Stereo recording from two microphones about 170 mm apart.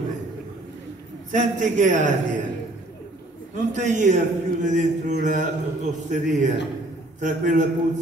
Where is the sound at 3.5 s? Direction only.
45° right (ahead or behind).